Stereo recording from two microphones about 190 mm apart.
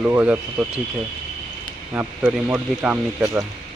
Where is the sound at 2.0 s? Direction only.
10° right (ahead or behind).